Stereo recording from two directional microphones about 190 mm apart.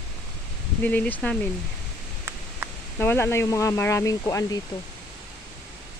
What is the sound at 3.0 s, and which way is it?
Speech, 10° left (ahead or behind).